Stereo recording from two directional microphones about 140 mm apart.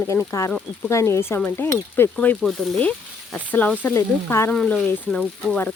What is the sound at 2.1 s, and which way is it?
Speech, 5° left (ahead or behind).